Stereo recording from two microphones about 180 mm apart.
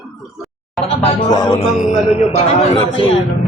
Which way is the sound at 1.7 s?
40° left (ahead or behind).